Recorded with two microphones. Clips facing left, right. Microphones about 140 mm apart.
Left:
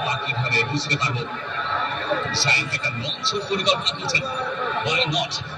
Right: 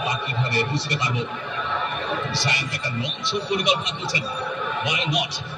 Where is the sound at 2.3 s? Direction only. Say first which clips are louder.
Even; 15° right (ahead or behind).